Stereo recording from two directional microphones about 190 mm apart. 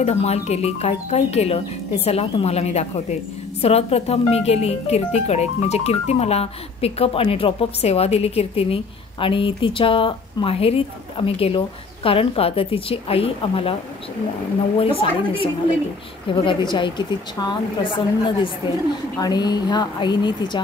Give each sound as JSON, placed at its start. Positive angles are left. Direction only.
{"t": 0.0, "sound": "speech", "side_deg": 35}
{"t": 14.8, "sound": "a woman's voice", "side_deg": 30}